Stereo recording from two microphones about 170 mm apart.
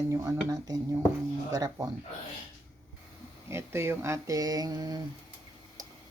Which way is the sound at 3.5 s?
15° right (ahead or behind).